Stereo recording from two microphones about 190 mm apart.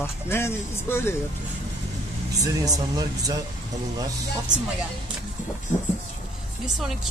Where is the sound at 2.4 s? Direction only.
20° right (ahead or behind).